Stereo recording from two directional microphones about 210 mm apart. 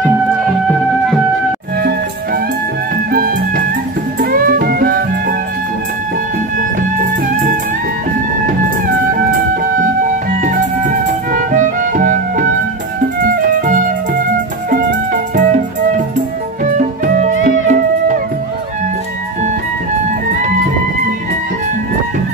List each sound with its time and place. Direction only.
3.1 s music: 45° right (ahead or behind)
7.0 s music: 40° right (ahead or behind)
11.3 s music: 40° right (ahead or behind)
15.3 s music: 40° right (ahead or behind)
16.7 s music: 40° right (ahead or behind)